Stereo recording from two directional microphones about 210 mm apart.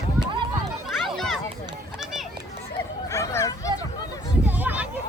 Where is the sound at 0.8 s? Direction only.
Centre (ahead or behind).